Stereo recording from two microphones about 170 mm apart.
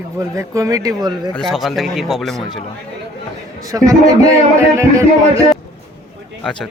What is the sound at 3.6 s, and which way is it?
A man's voice, 20° right (ahead or behind).